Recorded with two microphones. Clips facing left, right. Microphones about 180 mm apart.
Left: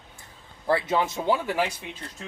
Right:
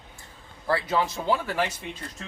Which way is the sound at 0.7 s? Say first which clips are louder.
Left 1 dB; 20° left (ahead or behind).